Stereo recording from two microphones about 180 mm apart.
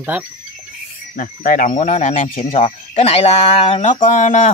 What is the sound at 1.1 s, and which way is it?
Speech, 50° left (ahead or behind).